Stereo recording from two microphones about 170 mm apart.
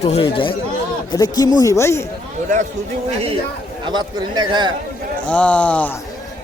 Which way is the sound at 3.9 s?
25° right (ahead or behind).